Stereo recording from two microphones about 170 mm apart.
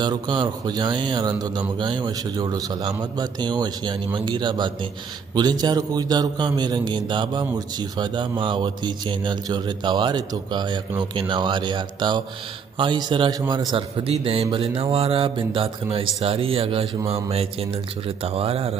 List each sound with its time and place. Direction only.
0.0 s a man's voice: 25° right (ahead or behind)